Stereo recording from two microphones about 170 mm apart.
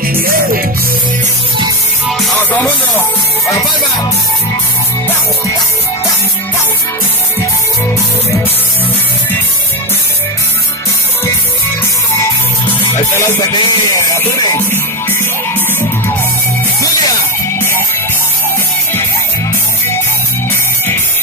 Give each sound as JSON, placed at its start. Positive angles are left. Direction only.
{"t": 0.0, "sound": "music", "side_deg": -55}
{"t": 2.0, "sound": "music", "side_deg": 0}
{"t": 2.3, "sound": "music", "side_deg": 10}
{"t": 13.3, "sound": "music", "side_deg": 20}
{"t": 17.6, "sound": "music", "side_deg": 15}